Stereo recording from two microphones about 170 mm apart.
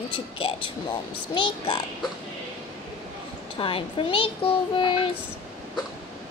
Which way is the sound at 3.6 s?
30° left (ahead or behind).